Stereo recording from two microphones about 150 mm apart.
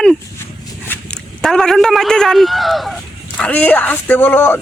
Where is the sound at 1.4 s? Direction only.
5° left (ahead or behind).